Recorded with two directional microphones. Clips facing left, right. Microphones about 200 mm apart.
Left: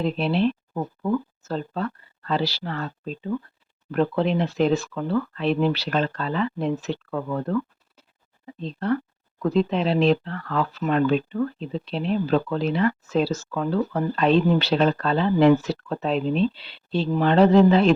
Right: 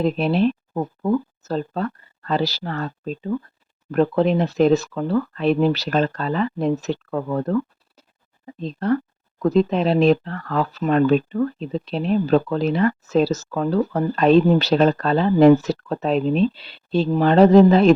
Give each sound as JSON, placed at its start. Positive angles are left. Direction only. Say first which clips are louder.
{"t": 0.0, "sound": "speech", "louder": "right 3 dB", "side_deg": -45}